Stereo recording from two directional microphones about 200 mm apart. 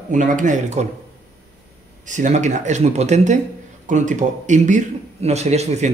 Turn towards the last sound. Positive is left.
turn(degrees=-35)  # may be behind; listen again after turning